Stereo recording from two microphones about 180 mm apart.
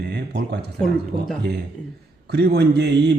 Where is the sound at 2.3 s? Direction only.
65° right (ahead or behind).